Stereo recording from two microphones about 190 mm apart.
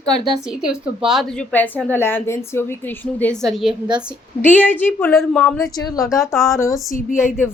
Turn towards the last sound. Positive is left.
turn(degrees=45)  # may be behind; listen again after turning